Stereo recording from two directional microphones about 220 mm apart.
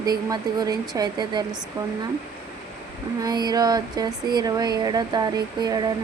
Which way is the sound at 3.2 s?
20° right (ahead or behind).